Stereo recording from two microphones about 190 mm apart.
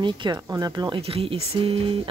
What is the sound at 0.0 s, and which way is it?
Speech, 25° right (ahead or behind).